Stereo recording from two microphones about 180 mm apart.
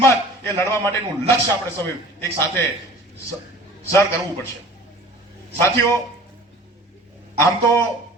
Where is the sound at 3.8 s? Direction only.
15° left (ahead or behind).